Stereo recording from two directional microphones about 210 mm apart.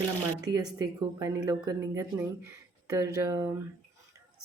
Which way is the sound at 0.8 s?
15° right (ahead or behind).